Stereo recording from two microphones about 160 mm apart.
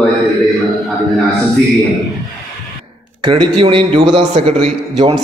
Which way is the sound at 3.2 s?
30° right (ahead or behind).